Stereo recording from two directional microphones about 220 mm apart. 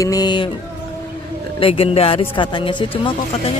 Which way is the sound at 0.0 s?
15° left (ahead or behind).